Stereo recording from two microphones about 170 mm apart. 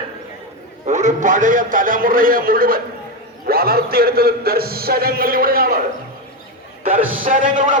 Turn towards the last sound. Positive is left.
turn(degrees=-50)  # may be behind; listen again after turning